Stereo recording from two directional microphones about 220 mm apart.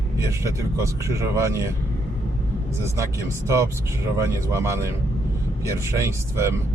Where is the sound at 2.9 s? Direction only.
15° right (ahead or behind).